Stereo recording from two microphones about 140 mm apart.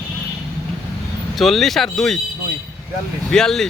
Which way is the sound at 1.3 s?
Centre (ahead or behind).